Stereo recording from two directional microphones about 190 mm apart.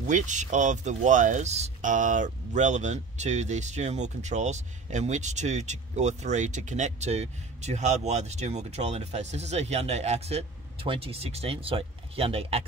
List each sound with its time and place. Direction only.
0.0 s speech: 40° right (ahead or behind)